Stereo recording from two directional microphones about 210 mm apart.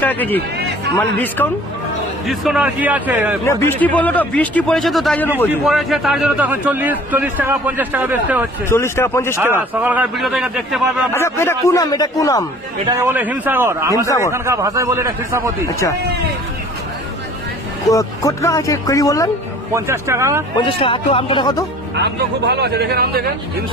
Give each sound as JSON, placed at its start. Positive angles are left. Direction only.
{"t": 0.0, "sound": "a man's voice", "side_deg": 10}
{"t": 3.4, "sound": "a man's voice", "side_deg": 10}
{"t": 8.6, "sound": "a man's voice", "side_deg": 10}
{"t": 9.6, "sound": "a man's voice", "side_deg": -10}
{"t": 11.1, "sound": "a man's voice", "side_deg": 10}
{"t": 13.0, "sound": "a man's voice", "side_deg": -10}
{"t": 14.0, "sound": "a man's voice", "side_deg": 15}
{"t": 14.3, "sound": "a man's voice", "side_deg": -15}
{"t": 15.6, "sound": "a man's voice", "side_deg": 15}
{"t": 17.8, "sound": "a man's voice", "side_deg": 15}
{"t": 19.7, "sound": "a man's voice", "side_deg": -15}
{"t": 20.5, "sound": "speech", "side_deg": 25}
{"t": 21.9, "sound": "speech", "side_deg": -50}